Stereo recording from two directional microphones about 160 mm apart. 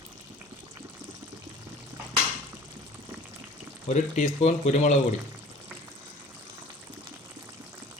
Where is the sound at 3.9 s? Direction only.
40° left (ahead or behind).